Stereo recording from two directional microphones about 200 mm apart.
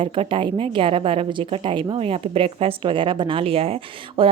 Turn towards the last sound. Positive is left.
turn(degrees=-30)  # may be behind; listen again after turning